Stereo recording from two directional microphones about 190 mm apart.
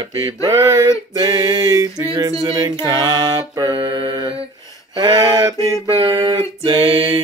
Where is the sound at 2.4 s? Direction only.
20° right (ahead or behind).